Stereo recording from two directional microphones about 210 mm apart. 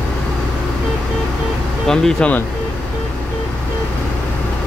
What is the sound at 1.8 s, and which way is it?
Speech, centre (ahead or behind).